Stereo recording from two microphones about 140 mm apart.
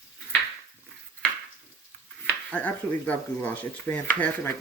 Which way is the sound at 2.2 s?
10° left (ahead or behind).